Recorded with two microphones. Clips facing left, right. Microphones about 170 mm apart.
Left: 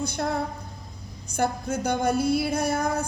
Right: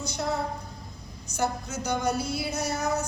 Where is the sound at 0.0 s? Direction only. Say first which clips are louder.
Left 2 dB; 55° left (ahead or behind).